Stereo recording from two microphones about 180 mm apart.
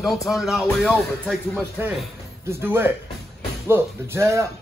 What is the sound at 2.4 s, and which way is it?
Speech, 15° right (ahead or behind).